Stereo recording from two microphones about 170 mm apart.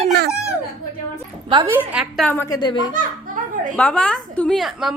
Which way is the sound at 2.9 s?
50° right (ahead or behind).